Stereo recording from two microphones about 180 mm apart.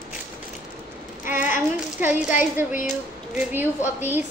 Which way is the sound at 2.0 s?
10° right (ahead or behind).